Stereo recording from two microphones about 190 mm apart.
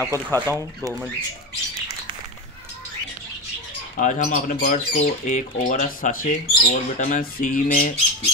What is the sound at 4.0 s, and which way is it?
Speech, 40° left (ahead or behind).